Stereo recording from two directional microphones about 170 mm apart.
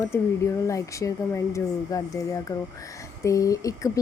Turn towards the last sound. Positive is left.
turn(degrees=20)  # may be behind; listen again after turning